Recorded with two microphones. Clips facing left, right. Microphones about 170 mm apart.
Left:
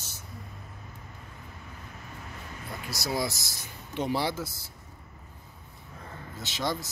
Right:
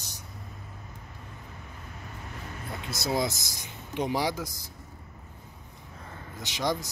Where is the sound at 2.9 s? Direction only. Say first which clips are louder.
Right 2 dB; 20° right (ahead or behind).